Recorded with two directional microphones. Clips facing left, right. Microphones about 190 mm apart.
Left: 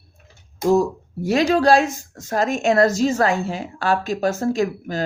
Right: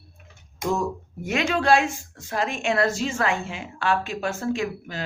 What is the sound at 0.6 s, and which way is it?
Speech, 35° left (ahead or behind).